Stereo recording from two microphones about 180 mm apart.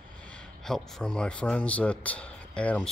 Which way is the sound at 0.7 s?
5° left (ahead or behind).